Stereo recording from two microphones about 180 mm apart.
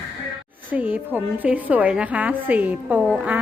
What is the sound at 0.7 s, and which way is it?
A woman's voice, 10° right (ahead or behind).